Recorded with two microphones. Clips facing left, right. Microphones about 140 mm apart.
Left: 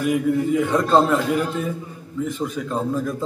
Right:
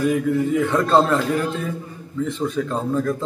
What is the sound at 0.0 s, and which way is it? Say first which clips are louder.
Speech: even; 15° left (ahead or behind).